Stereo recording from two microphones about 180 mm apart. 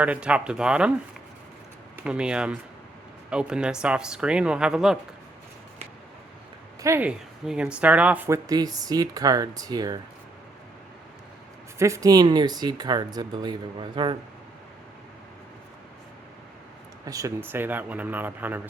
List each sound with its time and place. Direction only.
0.0 s speech: 5° right (ahead or behind)
2.0 s speech: 5° right (ahead or behind)
6.8 s a man's voice: 15° right (ahead or behind)
11.8 s speech: 15° right (ahead or behind)
17.1 s a man's voice: 15° right (ahead or behind)